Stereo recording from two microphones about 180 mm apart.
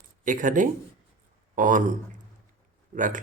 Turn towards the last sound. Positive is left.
turn(degrees=-45)  # may be behind; listen again after turning